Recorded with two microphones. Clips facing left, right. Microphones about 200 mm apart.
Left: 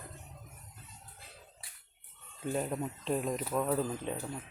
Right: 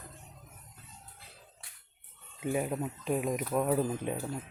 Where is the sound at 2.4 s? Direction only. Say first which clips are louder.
Right 2 dB; 10° right (ahead or behind).